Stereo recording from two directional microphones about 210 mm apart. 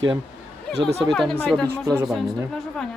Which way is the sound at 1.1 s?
Centre (ahead or behind).